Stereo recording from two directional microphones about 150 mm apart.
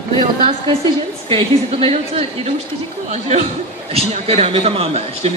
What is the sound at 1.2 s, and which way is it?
Speech, 35° right (ahead or behind).